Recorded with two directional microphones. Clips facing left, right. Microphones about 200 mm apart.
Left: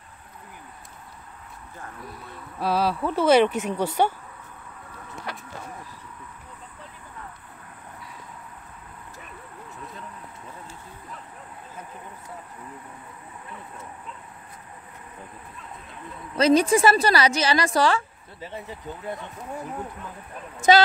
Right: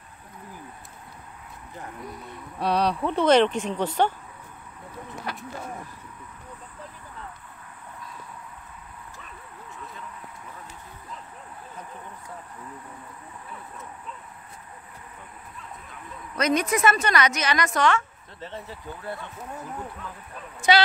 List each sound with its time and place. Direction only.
2.6 s speech: 5° left (ahead or behind)
16.3 s a woman's voice: 30° left (ahead or behind)
18.4 s speech: 15° left (ahead or behind)
20.7 s a woman's voice: 40° left (ahead or behind)